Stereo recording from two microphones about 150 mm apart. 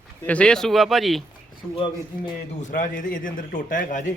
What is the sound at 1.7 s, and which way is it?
Speech, 35° left (ahead or behind).